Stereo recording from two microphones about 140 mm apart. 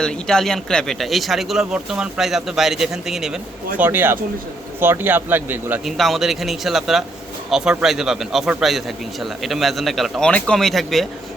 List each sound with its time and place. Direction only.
0.0 s speech: 5° left (ahead or behind)
3.8 s speech: 15° right (ahead or behind)
5.8 s speech: centre (ahead or behind)